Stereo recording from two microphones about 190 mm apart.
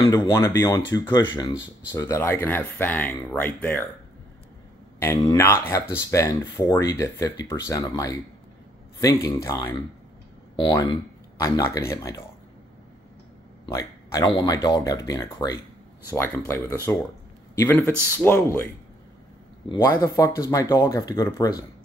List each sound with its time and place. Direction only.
0.0 s speech: 20° left (ahead or behind)
2.0 s speech: 15° left (ahead or behind)
5.0 s speech: 20° left (ahead or behind)
13.7 s speech: 15° left (ahead or behind)
19.7 s speech: 15° left (ahead or behind)